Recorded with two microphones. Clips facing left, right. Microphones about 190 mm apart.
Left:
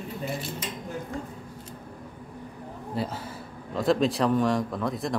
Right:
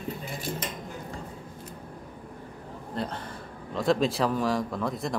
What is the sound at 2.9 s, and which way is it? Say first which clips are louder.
A man's voice: left 2 dB; 5° left (ahead or behind).